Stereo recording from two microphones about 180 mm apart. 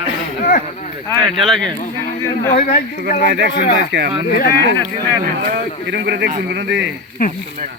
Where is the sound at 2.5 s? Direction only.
50° left (ahead or behind).